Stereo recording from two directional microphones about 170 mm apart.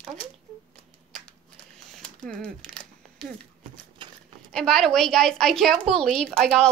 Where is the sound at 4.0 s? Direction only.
30° right (ahead or behind).